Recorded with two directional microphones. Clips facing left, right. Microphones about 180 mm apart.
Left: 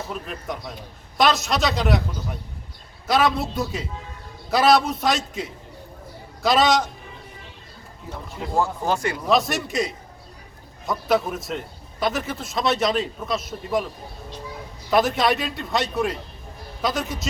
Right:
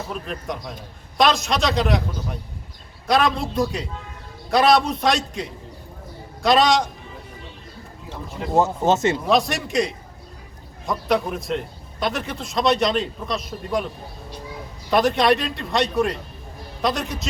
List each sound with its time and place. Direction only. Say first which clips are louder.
0.1 s a man's voice: right 2 dB; 5° left (ahead or behind)
3.1 s a man's voice: right 1 dB; centre (ahead or behind)
8.5 s speech: right 4 dB; 20° right (ahead or behind)
9.2 s a man's voice: right 1 dB; centre (ahead or behind)
14.8 s a man's voice: right 2 dB; centre (ahead or behind)